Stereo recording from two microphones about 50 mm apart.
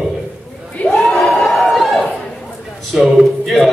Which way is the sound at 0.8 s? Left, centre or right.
Centre.